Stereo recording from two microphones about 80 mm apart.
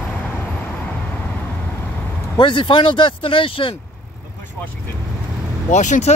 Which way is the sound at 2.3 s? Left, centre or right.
Left.